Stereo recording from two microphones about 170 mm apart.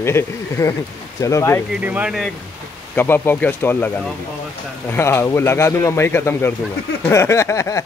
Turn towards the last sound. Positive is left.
turn(degrees=15)  # may be behind; listen again after turning